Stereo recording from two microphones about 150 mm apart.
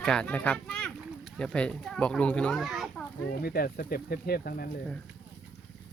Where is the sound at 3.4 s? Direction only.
85° left.